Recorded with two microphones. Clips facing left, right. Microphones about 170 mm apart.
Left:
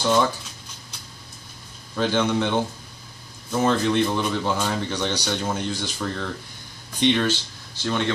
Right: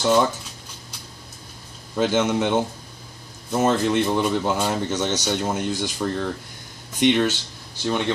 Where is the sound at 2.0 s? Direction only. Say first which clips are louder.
Right 2 dB; 20° right (ahead or behind).